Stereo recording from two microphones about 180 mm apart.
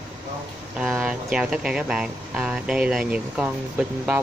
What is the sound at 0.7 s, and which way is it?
Speech, 5° right (ahead or behind).